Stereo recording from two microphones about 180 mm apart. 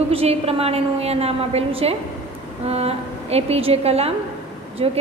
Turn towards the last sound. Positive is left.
turn(degrees=-30)  # may be behind; listen again after turning